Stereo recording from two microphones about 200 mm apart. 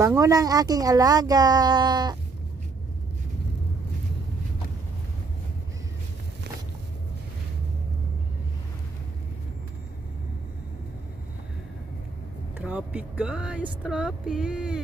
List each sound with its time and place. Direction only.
0.0 s speech: 15° right (ahead or behind)
12.5 s speech: 5° right (ahead or behind)